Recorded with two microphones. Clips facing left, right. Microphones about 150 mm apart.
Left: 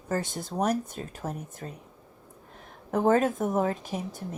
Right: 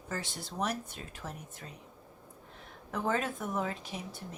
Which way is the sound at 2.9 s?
50° left (ahead or behind).